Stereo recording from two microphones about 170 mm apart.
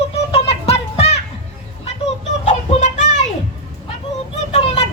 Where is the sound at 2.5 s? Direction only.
45° left (ahead or behind).